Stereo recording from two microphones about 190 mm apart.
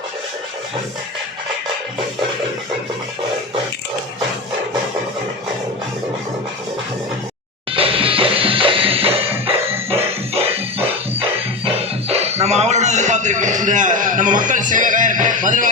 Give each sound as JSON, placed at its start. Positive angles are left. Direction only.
{"t": 7.7, "sound": "music", "side_deg": -30}
{"t": 11.2, "sound": "music", "side_deg": -30}